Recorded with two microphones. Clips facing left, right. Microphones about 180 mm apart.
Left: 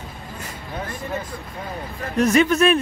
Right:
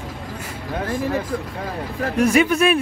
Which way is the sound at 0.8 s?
90° right.